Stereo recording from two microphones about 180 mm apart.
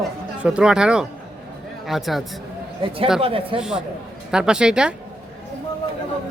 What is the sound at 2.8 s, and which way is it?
Speech, 30° right (ahead or behind).